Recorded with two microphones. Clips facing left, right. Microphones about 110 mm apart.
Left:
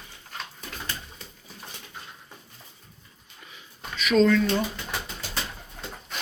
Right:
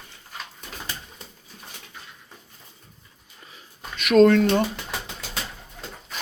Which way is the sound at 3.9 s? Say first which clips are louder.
Right 5 dB; 55° right (ahead or behind).